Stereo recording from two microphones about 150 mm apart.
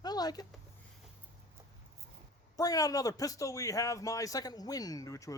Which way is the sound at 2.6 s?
25° left (ahead or behind).